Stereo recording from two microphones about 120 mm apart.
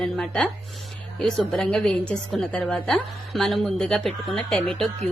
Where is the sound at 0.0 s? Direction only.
5° left (ahead or behind).